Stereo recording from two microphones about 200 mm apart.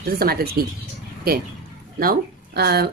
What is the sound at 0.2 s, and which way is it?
Speech, 50° right (ahead or behind).